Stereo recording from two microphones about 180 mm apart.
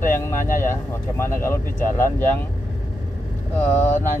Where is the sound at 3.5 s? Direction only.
10° left (ahead or behind).